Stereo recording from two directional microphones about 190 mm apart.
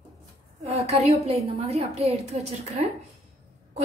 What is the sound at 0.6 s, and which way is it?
A woman's voice, 35° right (ahead or behind).